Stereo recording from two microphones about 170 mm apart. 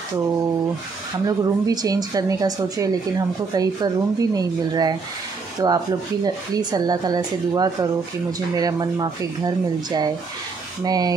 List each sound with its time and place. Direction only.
1.2 s speech: 20° right (ahead or behind)